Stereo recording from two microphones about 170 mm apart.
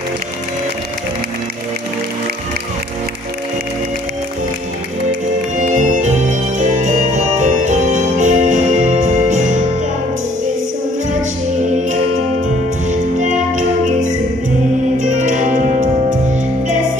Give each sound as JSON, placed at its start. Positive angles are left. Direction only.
{"t": 5.6, "sound": "music", "side_deg": -50}
{"t": 12.8, "sound": "music", "side_deg": -45}
{"t": 15.0, "sound": "music", "side_deg": -50}